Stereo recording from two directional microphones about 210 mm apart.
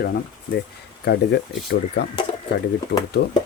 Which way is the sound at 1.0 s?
50° left (ahead or behind).